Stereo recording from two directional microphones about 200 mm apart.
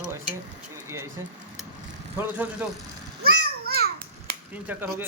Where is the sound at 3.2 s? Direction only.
50° right (ahead or behind).